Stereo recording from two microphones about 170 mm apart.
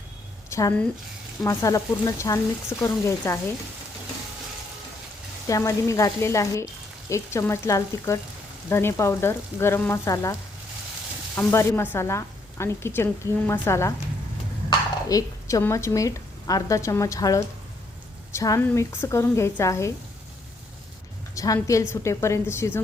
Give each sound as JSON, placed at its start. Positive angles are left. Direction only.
{"t": 0.5, "sound": "a sound", "side_deg": 15}
{"t": 1.5, "sound": "speech", "side_deg": 20}
{"t": 5.5, "sound": "a woman's voice", "side_deg": 20}
{"t": 11.3, "sound": "a woman's voice", "side_deg": 15}
{"t": 21.3, "sound": "a woman's voice", "side_deg": 20}